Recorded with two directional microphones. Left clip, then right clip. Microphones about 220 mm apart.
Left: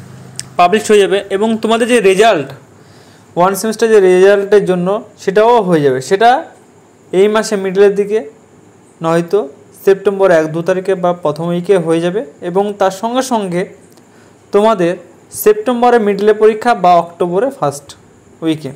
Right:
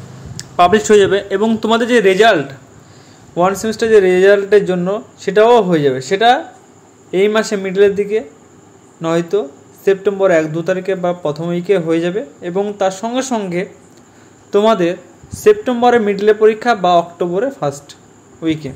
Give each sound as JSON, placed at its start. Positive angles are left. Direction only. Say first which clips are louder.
{"t": 0.4, "sound": "speech", "louder": "left 1 dB", "side_deg": 0}